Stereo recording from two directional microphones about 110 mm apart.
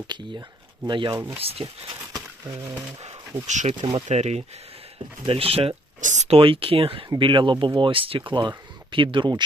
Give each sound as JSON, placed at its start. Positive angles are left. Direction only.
{"t": 0.9, "sound": "speech", "side_deg": -45}
{"t": 1.4, "sound": "speech", "side_deg": -60}
{"t": 3.0, "sound": "speech", "side_deg": -90}
{"t": 5.2, "sound": "speech", "side_deg": -60}